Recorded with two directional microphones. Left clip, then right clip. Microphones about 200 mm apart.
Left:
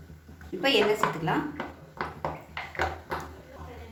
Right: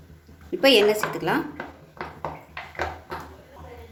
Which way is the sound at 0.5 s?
60° right (ahead or behind).